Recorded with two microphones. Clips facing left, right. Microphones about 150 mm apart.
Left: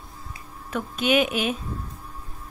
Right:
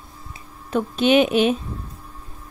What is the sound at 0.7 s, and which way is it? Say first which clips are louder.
Speech: right 6 dB; 30° right (ahead or behind).